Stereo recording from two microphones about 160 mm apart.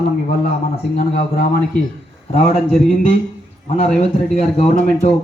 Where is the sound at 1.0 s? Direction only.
50° left (ahead or behind).